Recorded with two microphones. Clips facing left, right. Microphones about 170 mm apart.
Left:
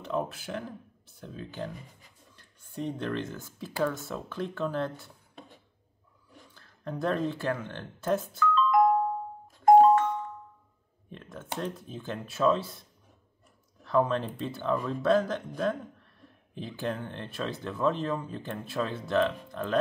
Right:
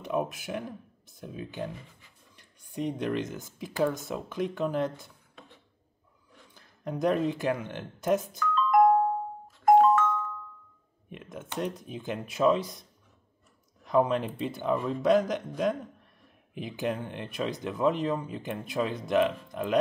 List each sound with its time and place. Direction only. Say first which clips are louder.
0.0 s speech: right 2 dB; 15° right (ahead or behind)
6.5 s speech: right 2 dB; 15° right (ahead or behind)
8.4 s music: even; 55° right (ahead or behind)
9.7 s music: left 2 dB; 35° left (ahead or behind)
11.1 s speech: left 1 dB; 15° right (ahead or behind)
13.8 s speech: right 1 dB; 15° right (ahead or behind)